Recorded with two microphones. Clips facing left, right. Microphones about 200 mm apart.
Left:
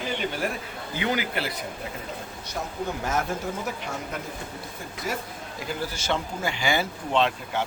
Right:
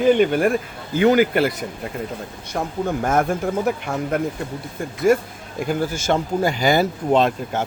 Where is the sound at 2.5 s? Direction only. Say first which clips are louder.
Right 8 dB; 55° right (ahead or behind).